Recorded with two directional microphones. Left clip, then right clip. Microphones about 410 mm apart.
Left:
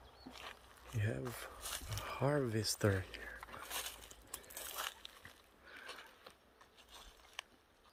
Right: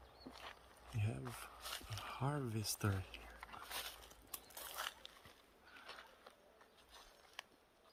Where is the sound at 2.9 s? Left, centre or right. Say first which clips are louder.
Left 8 dB; left.